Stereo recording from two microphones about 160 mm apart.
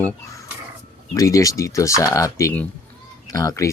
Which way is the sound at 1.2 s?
20° left (ahead or behind).